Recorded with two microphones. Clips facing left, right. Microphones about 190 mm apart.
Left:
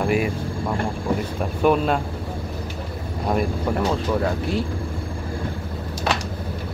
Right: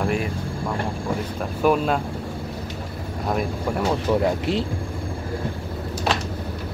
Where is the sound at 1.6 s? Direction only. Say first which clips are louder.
Left 1 dB; centre (ahead or behind).